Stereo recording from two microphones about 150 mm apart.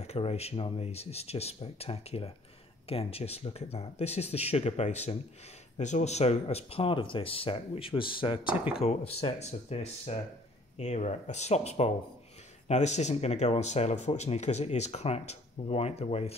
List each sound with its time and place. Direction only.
0.0 s speech: 45° left (ahead or behind)